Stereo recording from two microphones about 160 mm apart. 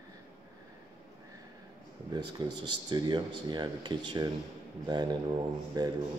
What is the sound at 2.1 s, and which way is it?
Speech, 25° right (ahead or behind).